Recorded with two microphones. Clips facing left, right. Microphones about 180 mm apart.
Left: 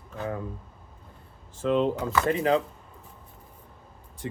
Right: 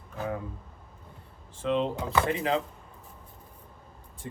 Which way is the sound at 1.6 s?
45° left (ahead or behind).